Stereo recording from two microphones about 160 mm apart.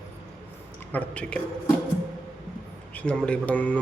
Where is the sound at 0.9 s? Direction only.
5° left (ahead or behind).